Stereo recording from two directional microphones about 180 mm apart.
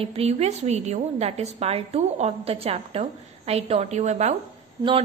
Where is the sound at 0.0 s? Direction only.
35° right (ahead or behind).